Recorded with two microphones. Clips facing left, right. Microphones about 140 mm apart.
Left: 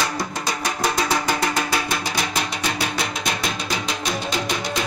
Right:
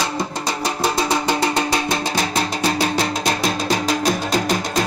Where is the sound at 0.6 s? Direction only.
30° right (ahead or behind).